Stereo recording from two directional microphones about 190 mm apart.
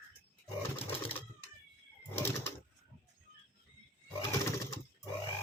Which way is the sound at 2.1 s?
10° left (ahead or behind).